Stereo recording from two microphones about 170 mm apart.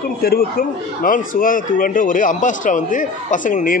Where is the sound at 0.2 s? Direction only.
60° left (ahead or behind).